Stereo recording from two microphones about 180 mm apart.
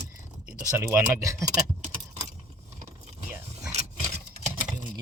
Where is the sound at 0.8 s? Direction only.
15° right (ahead or behind).